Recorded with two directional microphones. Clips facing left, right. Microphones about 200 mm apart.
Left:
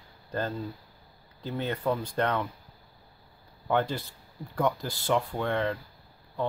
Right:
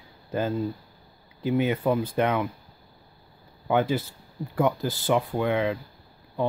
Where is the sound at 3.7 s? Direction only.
5° right (ahead or behind).